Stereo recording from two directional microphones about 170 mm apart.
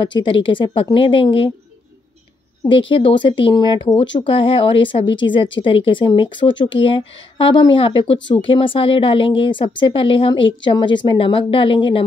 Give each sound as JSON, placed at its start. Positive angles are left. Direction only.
{"t": 0.0, "sound": "speech", "side_deg": 30}
{"t": 2.6, "sound": "speech", "side_deg": 30}